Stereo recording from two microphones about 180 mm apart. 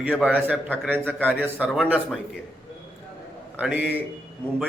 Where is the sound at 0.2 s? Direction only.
5° right (ahead or behind).